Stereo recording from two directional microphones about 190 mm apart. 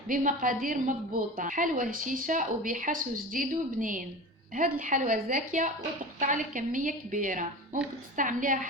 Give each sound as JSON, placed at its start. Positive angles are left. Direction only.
{"t": 0.1, "sound": "speech", "side_deg": -45}